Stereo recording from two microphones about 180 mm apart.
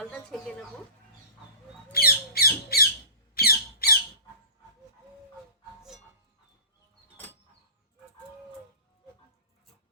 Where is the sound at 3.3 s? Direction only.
60° left (ahead or behind).